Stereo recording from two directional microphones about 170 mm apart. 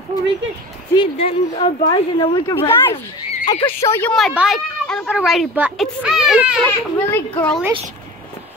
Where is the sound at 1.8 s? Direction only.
20° left (ahead or behind).